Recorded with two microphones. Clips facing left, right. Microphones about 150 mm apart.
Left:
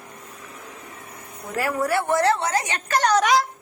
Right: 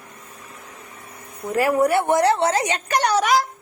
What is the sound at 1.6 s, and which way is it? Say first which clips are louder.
A woman's voice: right 5 dB; 20° right (ahead or behind).